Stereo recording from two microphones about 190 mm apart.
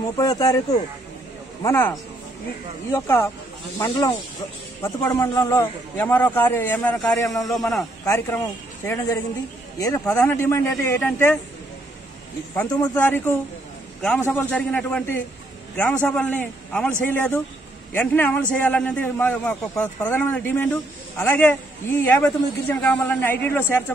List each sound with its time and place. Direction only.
0.2 s a man's voice: 20° left (ahead or behind)
1.6 s a man's voice: 15° left (ahead or behind)
8.0 s a man's voice: 15° left (ahead or behind)
12.8 s a man's voice: 10° left (ahead or behind)